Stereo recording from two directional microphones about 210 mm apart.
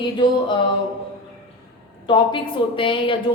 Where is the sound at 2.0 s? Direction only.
25° left (ahead or behind).